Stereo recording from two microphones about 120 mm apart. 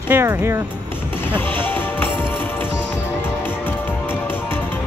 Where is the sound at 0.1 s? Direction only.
20° right (ahead or behind).